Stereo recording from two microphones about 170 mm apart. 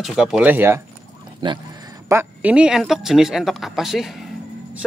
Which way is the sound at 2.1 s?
10° right (ahead or behind).